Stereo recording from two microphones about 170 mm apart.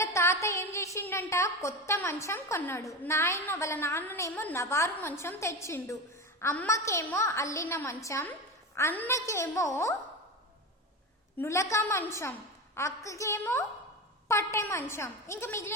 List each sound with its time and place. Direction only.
0.0 s a woman's voice: 15° left (ahead or behind)
11.3 s a woman's voice: 15° left (ahead or behind)